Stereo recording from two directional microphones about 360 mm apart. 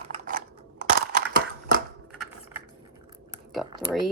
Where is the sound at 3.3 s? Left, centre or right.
Centre.